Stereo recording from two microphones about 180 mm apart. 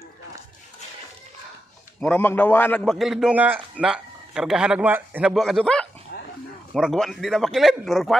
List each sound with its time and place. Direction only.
2.0 s a man's voice: 10° left (ahead or behind)
6.1 s bow-wow: 55° left (ahead or behind)
6.7 s a man's voice: centre (ahead or behind)